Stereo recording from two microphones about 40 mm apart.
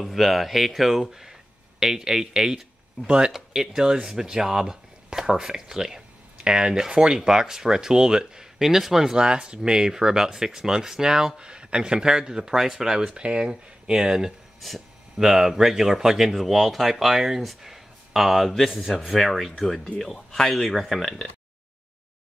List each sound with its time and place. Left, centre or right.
0.0 s speech: centre
13.1 s speech: right; by 21.3 s centre